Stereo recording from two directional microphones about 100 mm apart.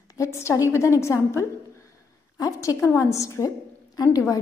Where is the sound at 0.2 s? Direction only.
30° left (ahead or behind).